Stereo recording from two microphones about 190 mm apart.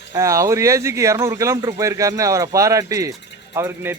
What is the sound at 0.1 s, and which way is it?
Speech, 15° right (ahead or behind).